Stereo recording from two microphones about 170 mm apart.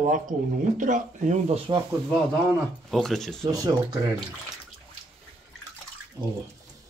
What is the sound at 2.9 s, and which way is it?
Speech, centre (ahead or behind).